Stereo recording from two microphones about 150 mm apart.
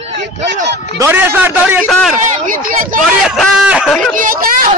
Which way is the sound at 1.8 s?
10° left (ahead or behind).